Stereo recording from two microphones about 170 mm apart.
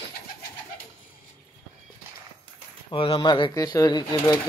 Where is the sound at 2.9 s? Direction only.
30° left (ahead or behind).